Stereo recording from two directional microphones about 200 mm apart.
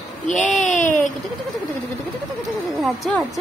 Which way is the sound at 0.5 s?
40° left (ahead or behind).